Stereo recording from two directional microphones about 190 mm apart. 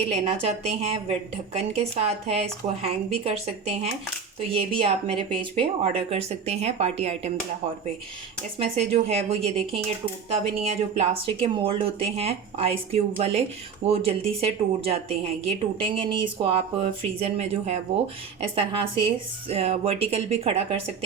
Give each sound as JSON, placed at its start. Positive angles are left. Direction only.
{"t": 0.1, "sound": "a woman's voice", "side_deg": -35}
{"t": 8.5, "sound": "a woman's voice", "side_deg": -30}